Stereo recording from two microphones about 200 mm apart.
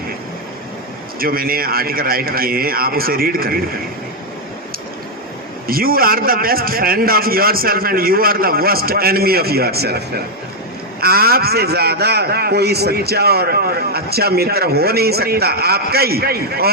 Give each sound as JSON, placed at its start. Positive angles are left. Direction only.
{"t": 1.2, "sound": "a man's voice", "side_deg": -45}
{"t": 5.6, "sound": "a man's voice", "side_deg": -45}
{"t": 11.0, "sound": "a man's voice", "side_deg": -50}